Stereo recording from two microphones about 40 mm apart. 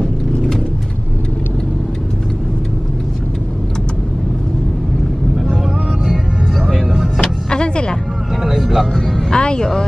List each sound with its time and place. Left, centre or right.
7.4 s music: left
8.5 s a sound: centre
9.3 s vehicle: left